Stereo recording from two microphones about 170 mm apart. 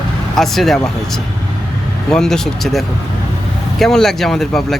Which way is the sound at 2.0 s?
5° left (ahead or behind).